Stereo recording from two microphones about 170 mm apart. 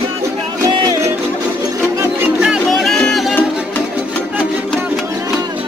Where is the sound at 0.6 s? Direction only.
20° right (ahead or behind).